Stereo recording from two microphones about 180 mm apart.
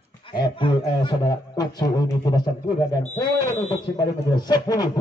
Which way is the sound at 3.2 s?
20° left (ahead or behind).